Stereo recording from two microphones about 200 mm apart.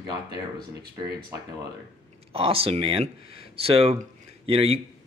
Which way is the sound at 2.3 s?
30° right (ahead or behind).